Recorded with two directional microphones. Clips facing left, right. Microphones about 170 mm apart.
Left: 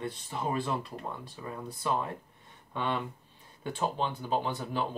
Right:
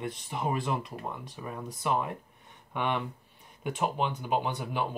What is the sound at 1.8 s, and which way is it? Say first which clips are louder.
Speech: right 2 dB; 15° right (ahead or behind).